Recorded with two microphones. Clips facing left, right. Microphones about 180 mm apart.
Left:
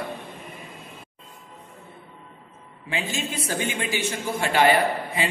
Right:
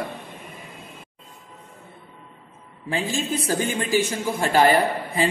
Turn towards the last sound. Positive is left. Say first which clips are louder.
# right 2 dB
turn(degrees=-40)  # may be behind; listen again after turning